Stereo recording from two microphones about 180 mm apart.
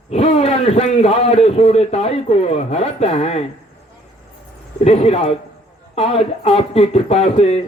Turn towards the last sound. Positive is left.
turn(degrees=35)  # may be behind; listen again after turning